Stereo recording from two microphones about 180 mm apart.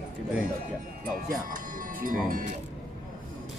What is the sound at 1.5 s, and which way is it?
Speech, 50° right (ahead or behind).